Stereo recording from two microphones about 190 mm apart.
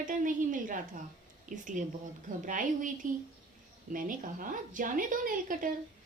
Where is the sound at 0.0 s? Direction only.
45° right (ahead or behind).